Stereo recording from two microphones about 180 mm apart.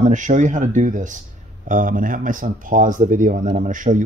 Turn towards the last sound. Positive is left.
turn(degrees=-45)  # may be behind; listen again after turning